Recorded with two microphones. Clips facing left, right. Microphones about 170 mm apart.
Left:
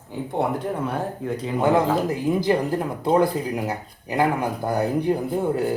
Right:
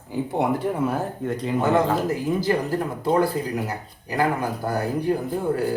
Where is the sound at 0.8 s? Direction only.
Centre (ahead or behind).